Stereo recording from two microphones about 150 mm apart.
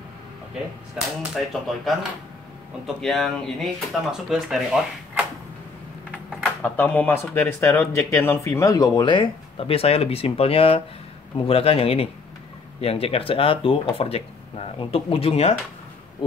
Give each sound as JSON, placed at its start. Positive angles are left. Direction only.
{"t": 0.9, "sound": "speech", "side_deg": 0}
{"t": 3.0, "sound": "speech", "side_deg": 0}
{"t": 6.3, "sound": "speech", "side_deg": 10}